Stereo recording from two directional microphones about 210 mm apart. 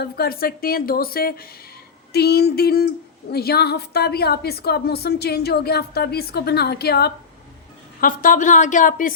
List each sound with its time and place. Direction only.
0.0 s a woman's voice: 45° left (ahead or behind)